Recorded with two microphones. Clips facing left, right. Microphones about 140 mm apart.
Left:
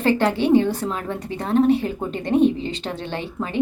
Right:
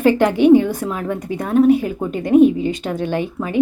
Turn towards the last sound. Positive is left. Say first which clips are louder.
# right 6 dB
turn(degrees=-10)  # may be behind; listen again after turning